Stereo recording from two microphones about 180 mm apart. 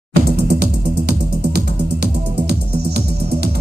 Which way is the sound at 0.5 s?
60° right (ahead or behind).